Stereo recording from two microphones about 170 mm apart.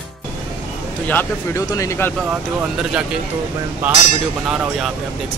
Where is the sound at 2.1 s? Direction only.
Centre (ahead or behind).